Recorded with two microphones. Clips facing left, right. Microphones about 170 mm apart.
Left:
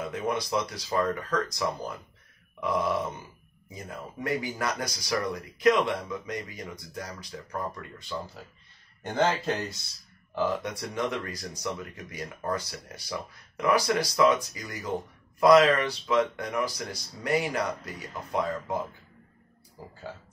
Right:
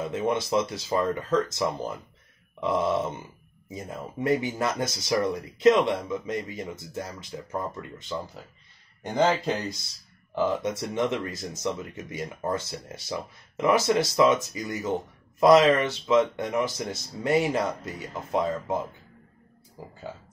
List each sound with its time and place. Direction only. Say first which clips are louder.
0.0 s speech: right 3 dB; 25° right (ahead or behind)